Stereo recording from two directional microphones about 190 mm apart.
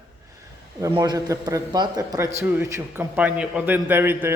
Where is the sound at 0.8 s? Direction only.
20° right (ahead or behind).